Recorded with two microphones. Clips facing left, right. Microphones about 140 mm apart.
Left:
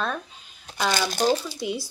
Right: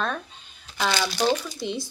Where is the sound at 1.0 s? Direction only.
50° left (ahead or behind).